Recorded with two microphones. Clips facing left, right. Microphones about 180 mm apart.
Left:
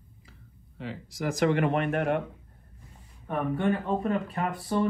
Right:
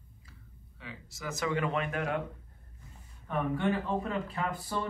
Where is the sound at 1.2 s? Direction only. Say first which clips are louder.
Left 7 dB; 60° left (ahead or behind).